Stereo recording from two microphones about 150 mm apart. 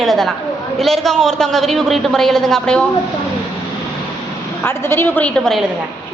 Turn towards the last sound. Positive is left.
turn(degrees=5)  # may be behind; listen again after turning